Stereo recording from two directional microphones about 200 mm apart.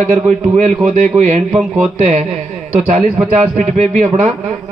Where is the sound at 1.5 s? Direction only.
10° right (ahead or behind).